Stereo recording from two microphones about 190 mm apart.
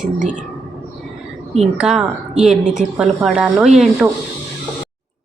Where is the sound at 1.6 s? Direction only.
Centre (ahead or behind).